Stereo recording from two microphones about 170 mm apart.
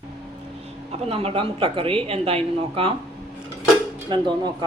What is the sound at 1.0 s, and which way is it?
Speech, 35° right (ahead or behind).